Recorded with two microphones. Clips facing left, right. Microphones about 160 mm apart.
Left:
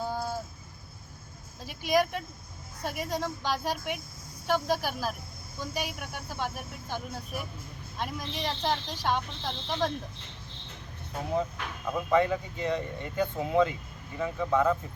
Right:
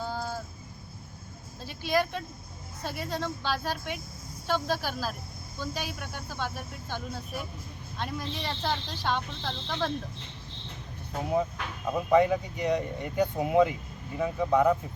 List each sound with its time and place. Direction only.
0.0 s a sound: 15° left (ahead or behind)
1.6 s speech: 15° left (ahead or behind)
11.9 s speech: 15° right (ahead or behind)